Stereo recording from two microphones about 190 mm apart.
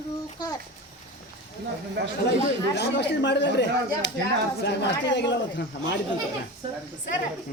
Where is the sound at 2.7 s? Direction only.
65° left (ahead or behind).